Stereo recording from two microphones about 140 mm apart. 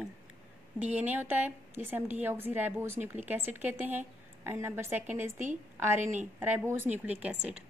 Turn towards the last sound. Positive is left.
turn(degrees=-10)  # may be behind; listen again after turning